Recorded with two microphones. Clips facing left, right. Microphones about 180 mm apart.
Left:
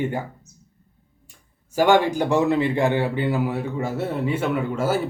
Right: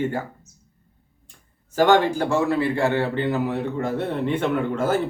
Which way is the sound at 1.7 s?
10° left (ahead or behind).